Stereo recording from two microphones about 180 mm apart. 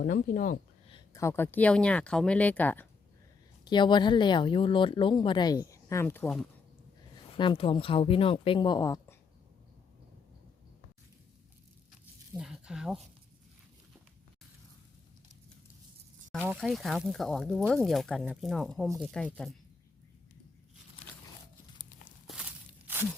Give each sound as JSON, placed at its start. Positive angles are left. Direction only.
{"t": 0.0, "sound": "speech", "side_deg": 50}
{"t": 0.9, "sound": "speech", "side_deg": 20}
{"t": 3.6, "sound": "speech", "side_deg": 25}
{"t": 7.3, "sound": "speech", "side_deg": 30}
{"t": 12.4, "sound": "speech", "side_deg": -5}
{"t": 16.6, "sound": "speech", "side_deg": 0}
{"t": 21.8, "sound": "walk", "side_deg": 50}